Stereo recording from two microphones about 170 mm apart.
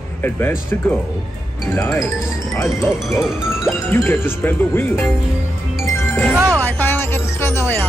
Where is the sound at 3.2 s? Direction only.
5° right (ahead or behind).